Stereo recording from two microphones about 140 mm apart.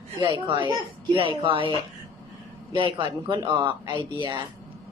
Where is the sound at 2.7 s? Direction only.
35° right (ahead or behind).